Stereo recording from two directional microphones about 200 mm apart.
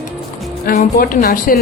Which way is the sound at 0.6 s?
45° left (ahead or behind).